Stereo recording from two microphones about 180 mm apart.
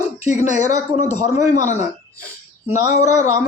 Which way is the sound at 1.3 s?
15° right (ahead or behind).